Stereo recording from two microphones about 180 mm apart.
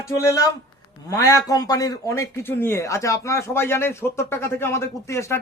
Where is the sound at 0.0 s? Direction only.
15° left (ahead or behind).